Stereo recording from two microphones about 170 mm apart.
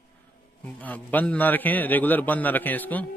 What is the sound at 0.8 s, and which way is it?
A man's voice, 10° left (ahead or behind).